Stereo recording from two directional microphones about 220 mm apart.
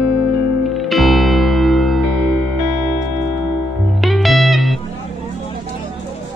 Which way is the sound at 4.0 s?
Centre (ahead or behind).